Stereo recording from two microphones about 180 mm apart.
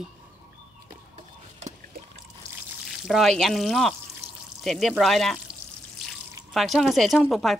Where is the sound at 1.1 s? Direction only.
40° right (ahead or behind).